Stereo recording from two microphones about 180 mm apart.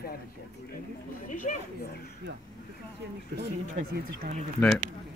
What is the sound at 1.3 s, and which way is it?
Speech, 50° left (ahead or behind).